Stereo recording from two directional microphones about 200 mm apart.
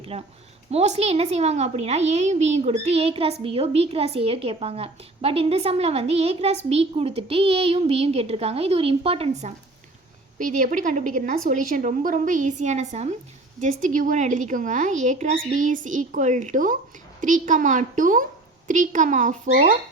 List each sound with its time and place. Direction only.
0.0 s a woman's voice: 30° right (ahead or behind)